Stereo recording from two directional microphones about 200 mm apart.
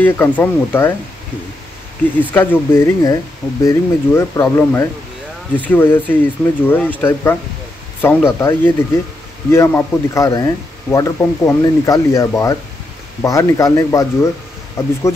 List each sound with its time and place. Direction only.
0.0 s a man's voice: 10° left (ahead or behind)
2.1 s a man's voice: 10° left (ahead or behind)